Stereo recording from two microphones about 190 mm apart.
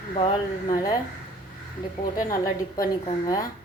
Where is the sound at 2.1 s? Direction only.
20° left (ahead or behind).